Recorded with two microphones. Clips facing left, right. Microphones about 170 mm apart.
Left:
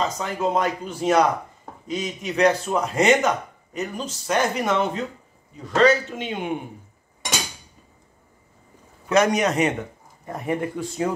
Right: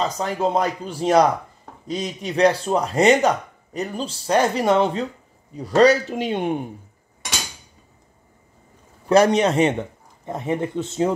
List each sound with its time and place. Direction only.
0.0 s speech: 35° right (ahead or behind)
9.1 s speech: 30° right (ahead or behind)